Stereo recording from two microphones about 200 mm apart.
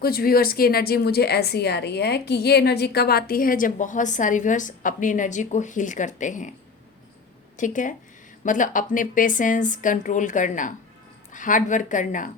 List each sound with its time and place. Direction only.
0.0 s a woman's voice: 50° left (ahead or behind)
7.5 s a woman's voice: 40° left (ahead or behind)